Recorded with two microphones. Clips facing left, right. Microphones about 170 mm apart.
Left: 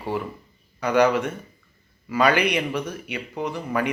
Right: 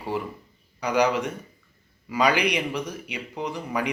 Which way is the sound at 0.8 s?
10° right (ahead or behind).